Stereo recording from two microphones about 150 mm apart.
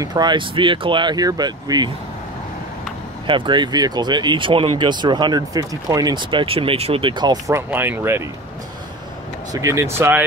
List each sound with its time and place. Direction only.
0.0 s speech: 30° right (ahead or behind)
3.3 s speech: 30° right (ahead or behind)
7.5 s speech: 15° right (ahead or behind)
9.5 s speech: 20° right (ahead or behind)